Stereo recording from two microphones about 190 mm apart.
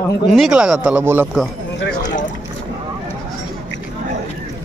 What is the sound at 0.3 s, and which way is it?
Speech, 5° right (ahead or behind).